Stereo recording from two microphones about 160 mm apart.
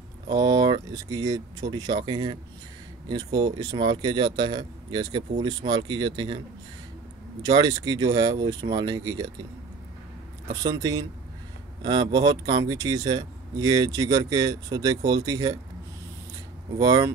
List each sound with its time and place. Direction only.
0.3 s speech: 25° right (ahead or behind)
7.4 s speech: 25° right (ahead or behind)
10.6 s speech: 25° right (ahead or behind)
16.7 s speech: 25° right (ahead or behind)